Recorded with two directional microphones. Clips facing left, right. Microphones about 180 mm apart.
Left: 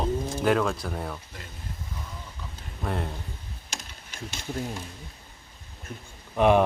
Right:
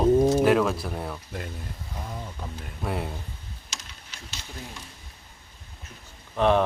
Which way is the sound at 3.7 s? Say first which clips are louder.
Left 4 dB; 55° left (ahead or behind).